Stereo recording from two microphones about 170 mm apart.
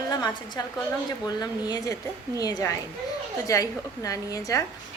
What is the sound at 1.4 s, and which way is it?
Speech, 25° left (ahead or behind).